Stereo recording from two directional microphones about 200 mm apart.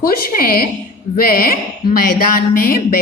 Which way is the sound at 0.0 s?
45° left (ahead or behind).